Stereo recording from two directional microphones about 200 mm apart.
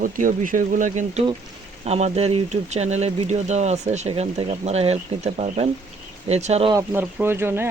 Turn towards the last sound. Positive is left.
turn(degrees=-10)  # may be behind; listen again after turning